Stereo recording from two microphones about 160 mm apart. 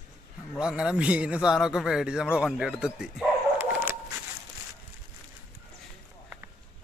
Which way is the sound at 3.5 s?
15° right (ahead or behind).